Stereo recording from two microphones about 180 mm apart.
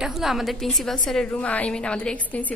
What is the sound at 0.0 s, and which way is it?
A woman's voice, centre (ahead or behind).